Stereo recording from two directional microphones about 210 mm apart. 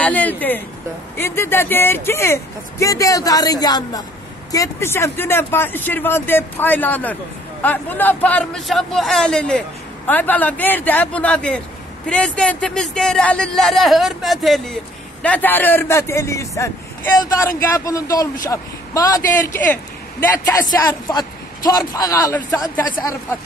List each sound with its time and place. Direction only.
0.0 s a man's voice: 5° left (ahead or behind)